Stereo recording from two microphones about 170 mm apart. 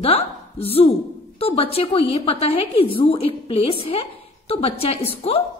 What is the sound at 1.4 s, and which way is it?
Speech, 35° left (ahead or behind).